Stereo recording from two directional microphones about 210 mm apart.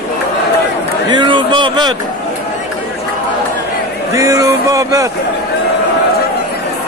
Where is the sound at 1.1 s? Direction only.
25° right (ahead or behind).